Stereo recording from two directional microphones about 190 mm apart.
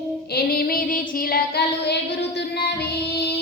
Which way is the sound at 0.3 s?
50° left (ahead or behind).